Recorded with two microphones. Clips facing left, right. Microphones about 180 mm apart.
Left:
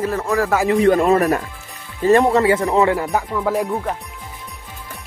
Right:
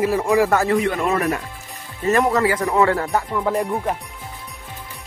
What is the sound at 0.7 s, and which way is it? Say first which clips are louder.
Speech: left 6 dB; 35° left (ahead or behind).